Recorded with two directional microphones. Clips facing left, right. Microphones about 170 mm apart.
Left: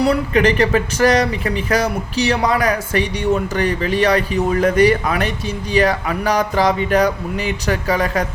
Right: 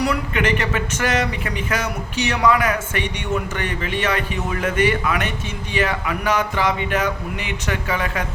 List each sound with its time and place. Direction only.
0.0 s speech: 35° left (ahead or behind)